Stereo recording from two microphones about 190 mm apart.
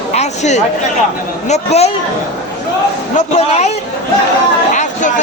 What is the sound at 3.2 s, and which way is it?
Speech, 35° left (ahead or behind).